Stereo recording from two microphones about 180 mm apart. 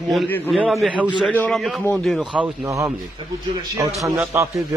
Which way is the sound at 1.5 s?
Centre (ahead or behind).